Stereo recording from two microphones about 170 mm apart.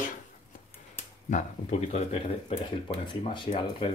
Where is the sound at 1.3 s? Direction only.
40° left (ahead or behind).